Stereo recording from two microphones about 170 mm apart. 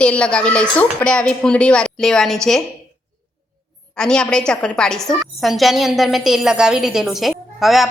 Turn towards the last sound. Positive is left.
turn(degrees=0)  # may be behind; listen again after turning